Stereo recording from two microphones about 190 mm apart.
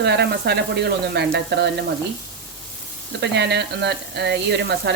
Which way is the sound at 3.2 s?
60° right (ahead or behind).